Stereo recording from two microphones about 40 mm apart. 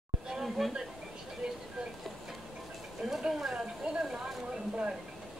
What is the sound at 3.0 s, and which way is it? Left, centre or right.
Speech, centre.